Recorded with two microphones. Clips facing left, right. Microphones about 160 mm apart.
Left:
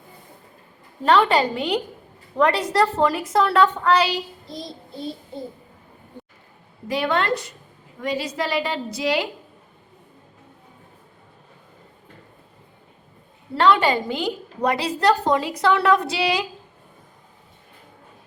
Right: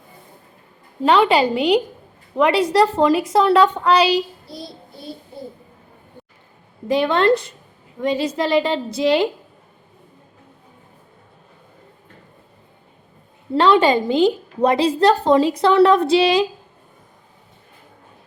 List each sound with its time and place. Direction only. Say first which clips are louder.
1.0 s a woman's voice: right 3 dB; 15° right (ahead or behind)
6.8 s a woman's voice: right 6 dB; 25° right (ahead or behind)
13.6 s a woman's voice: right 4 dB; 20° right (ahead or behind)